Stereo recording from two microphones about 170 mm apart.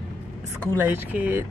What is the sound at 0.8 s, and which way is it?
Speech, 10° right (ahead or behind).